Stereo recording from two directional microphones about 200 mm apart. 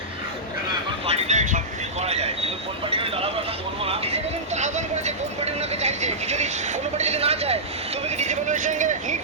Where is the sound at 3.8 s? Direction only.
30° right (ahead or behind).